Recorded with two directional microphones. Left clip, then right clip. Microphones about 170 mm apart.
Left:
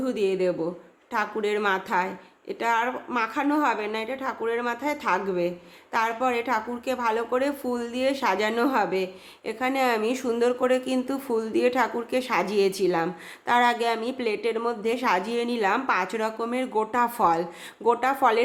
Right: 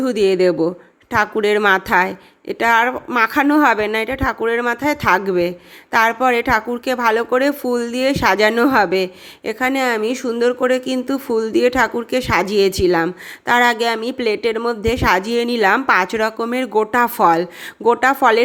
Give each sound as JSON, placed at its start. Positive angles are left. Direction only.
{"t": 0.0, "sound": "a woman's voice", "side_deg": -45}